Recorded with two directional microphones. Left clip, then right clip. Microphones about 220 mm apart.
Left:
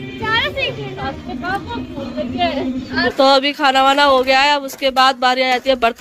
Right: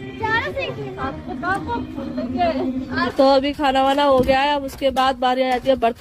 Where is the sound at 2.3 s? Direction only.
50° right (ahead or behind).